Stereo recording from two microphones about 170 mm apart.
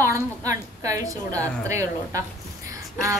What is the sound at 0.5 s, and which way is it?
Speech, 20° right (ahead or behind).